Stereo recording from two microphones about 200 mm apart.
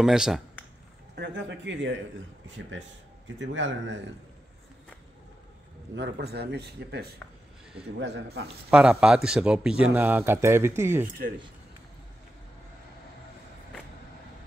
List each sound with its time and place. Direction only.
0.0 s speech: 5° right (ahead or behind)
1.1 s speech: 60° right (ahead or behind)
3.3 s a man's voice: 65° right (ahead or behind)
5.9 s speech: 55° right (ahead or behind)
8.6 s a man's voice: 5° right (ahead or behind)